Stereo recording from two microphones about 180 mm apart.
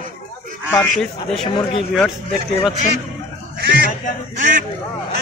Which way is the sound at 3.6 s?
60° right (ahead or behind).